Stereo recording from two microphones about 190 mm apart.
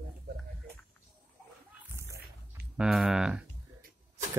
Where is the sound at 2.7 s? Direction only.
5° right (ahead or behind).